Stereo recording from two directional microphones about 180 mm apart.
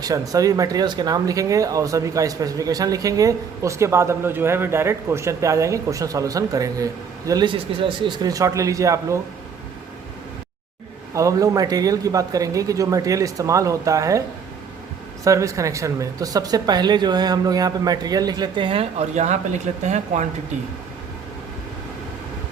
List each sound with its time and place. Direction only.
0.0 s speech: 20° right (ahead or behind)
11.1 s speech: 20° right (ahead or behind); by 20.2 s 40° right (ahead or behind)